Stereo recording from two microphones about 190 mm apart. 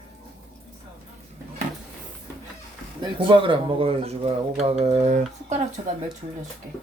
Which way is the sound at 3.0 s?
25° right (ahead or behind).